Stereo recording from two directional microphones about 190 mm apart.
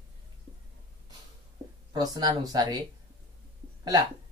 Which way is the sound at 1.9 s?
20° right (ahead or behind).